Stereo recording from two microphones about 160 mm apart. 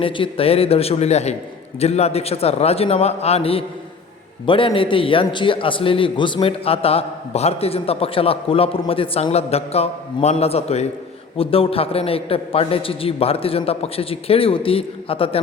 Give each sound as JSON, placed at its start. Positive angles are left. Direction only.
{"t": 0.0, "sound": "a man's voice", "side_deg": 35}